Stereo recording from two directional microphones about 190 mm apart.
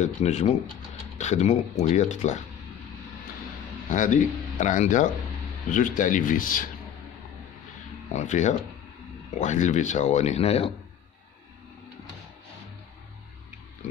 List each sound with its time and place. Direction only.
0.0 s speech: 35° left (ahead or behind)
3.9 s speech: 40° left (ahead or behind)
8.1 s speech: 40° left (ahead or behind)